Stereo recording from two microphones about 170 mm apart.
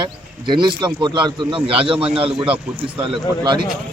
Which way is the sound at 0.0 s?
25° right (ahead or behind).